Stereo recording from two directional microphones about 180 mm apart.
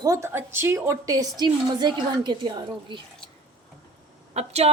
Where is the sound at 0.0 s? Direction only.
15° right (ahead or behind).